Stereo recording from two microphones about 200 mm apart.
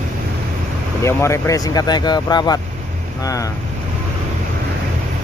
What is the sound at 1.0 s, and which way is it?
Speech, 15° left (ahead or behind).